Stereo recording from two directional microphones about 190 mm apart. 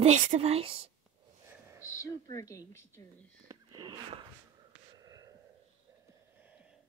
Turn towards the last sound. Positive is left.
turn(degrees=-20)  # may be behind; listen again after turning